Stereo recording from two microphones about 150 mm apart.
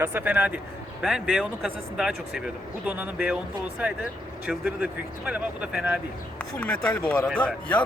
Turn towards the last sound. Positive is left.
turn(degrees=10)  # may be behind; listen again after turning